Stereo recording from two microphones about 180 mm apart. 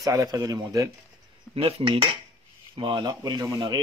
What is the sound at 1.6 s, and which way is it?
Speech, 30° right (ahead or behind).